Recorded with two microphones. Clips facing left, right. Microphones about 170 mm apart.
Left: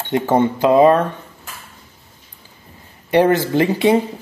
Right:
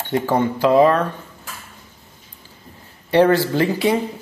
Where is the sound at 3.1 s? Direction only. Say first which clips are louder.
Left 1 dB; 20° left (ahead or behind).